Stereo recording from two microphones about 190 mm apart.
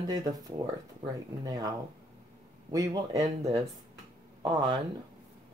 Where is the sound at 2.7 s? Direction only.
20° right (ahead or behind).